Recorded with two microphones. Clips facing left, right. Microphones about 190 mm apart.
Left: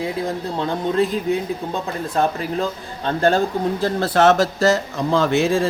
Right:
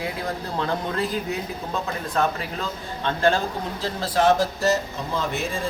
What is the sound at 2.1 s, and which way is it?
Speech, 40° left (ahead or behind).